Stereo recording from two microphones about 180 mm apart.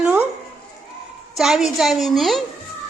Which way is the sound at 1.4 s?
5° right (ahead or behind).